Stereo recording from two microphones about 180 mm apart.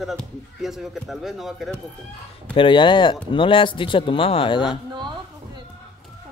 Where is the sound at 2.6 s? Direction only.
25° left (ahead or behind).